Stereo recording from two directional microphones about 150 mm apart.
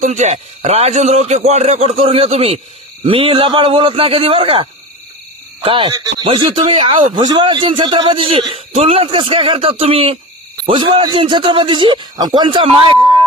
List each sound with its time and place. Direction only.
0.0 s a man's voice: 50° right (ahead or behind)
5.9 s speech: 25° right (ahead or behind)
6.2 s a man's voice: 40° right (ahead or behind)